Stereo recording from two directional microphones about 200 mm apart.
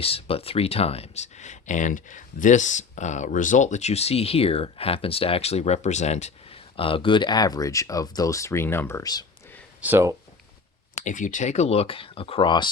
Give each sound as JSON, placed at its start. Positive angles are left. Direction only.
{"t": 0.0, "sound": "speech", "side_deg": 30}
{"t": 9.8, "sound": "speech", "side_deg": -10}
{"t": 11.0, "sound": "speech", "side_deg": 40}